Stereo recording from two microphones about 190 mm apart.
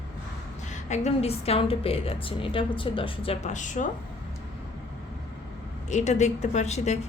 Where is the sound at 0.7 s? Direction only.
40° left (ahead or behind).